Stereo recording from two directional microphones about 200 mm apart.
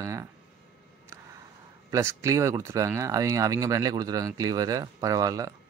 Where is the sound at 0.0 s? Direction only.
15° right (ahead or behind).